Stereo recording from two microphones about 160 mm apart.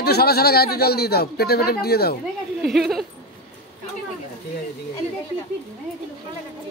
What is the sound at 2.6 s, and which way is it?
Speech, centre (ahead or behind).